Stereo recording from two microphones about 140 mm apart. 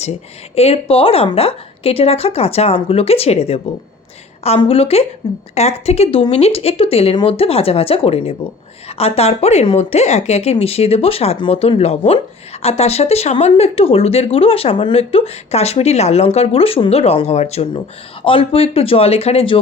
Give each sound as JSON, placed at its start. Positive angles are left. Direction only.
{"t": 0.5, "sound": "speech", "side_deg": 45}
{"t": 5.2, "sound": "a woman's voice", "side_deg": 30}
{"t": 5.5, "sound": "speech", "side_deg": 50}
{"t": 18.2, "sound": "speech", "side_deg": 40}